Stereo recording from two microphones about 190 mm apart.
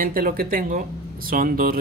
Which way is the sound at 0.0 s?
50° right (ahead or behind).